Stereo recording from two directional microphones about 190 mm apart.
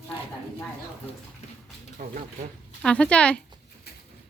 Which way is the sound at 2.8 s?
5° left (ahead or behind).